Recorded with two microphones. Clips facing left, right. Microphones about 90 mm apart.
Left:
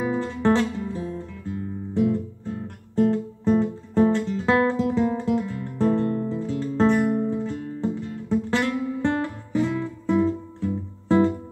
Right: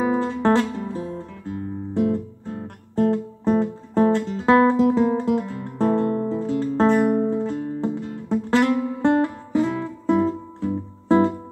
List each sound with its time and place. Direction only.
0.0 s music: 40° right (ahead or behind)